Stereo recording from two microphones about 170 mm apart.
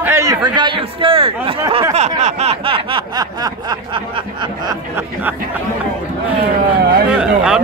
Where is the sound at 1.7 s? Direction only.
35° right (ahead or behind).